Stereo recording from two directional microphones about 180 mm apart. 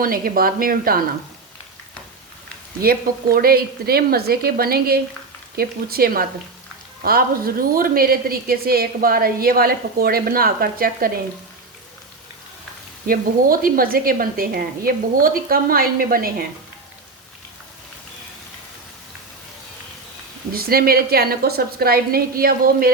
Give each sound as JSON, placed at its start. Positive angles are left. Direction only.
{"t": 0.0, "sound": "a woman's voice", "side_deg": -55}
{"t": 2.8, "sound": "a woman's voice", "side_deg": -55}
{"t": 13.1, "sound": "a woman's voice", "side_deg": -50}
{"t": 20.5, "sound": "a woman's voice", "side_deg": -55}